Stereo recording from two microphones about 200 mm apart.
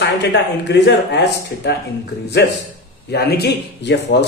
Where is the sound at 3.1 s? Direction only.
55° left (ahead or behind).